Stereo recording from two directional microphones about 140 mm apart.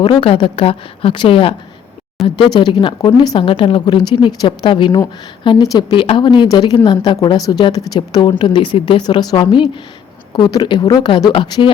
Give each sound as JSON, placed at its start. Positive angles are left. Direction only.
{"t": 0.0, "sound": "speech", "side_deg": 35}